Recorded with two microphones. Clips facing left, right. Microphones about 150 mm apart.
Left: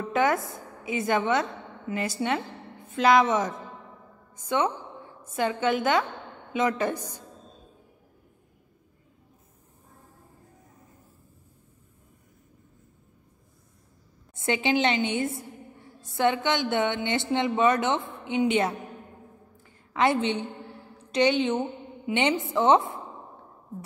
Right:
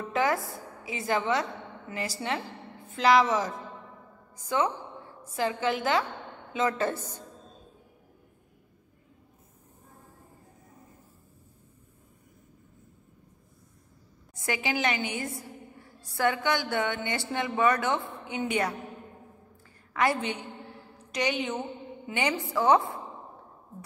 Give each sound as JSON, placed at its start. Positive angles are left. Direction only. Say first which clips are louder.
{"t": 0.1, "sound": "a woman's voice", "louder": "left 3 dB", "side_deg": 20}
{"t": 14.3, "sound": "a woman's voice", "louder": "left 6 dB", "side_deg": 25}
{"t": 19.9, "sound": "a woman's voice", "louder": "left 4 dB", "side_deg": 25}